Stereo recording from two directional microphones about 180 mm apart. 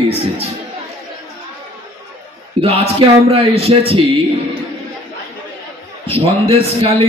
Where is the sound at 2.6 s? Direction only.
35° right (ahead or behind).